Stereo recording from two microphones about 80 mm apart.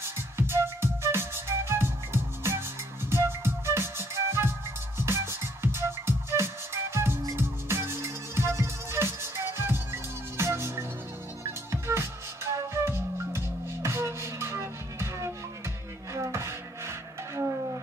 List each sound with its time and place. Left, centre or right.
0.0 s music: right